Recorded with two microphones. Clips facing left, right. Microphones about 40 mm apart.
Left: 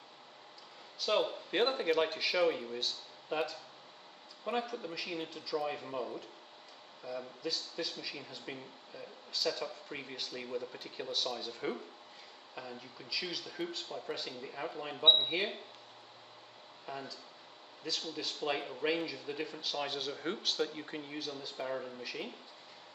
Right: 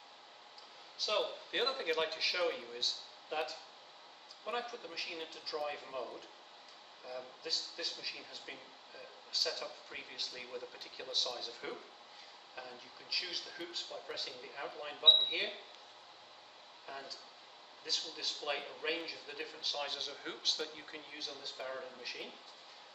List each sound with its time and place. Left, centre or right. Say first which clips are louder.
0.9 s speech: left 4 dB; centre
16.8 s speech: left 4 dB; centre